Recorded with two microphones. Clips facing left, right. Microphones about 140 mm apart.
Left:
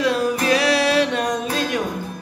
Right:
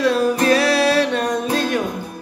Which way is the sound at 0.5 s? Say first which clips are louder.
Even; 15° left (ahead or behind).